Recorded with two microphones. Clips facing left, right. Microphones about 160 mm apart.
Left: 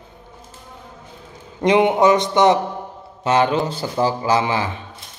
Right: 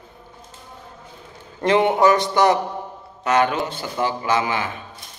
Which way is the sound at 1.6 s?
15° left (ahead or behind).